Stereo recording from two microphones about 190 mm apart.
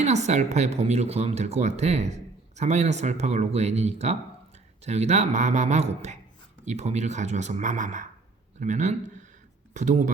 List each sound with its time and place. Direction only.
0.0 s speech: 35° right (ahead or behind)